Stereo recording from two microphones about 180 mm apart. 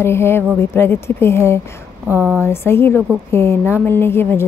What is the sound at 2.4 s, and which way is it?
A woman's voice, 15° left (ahead or behind).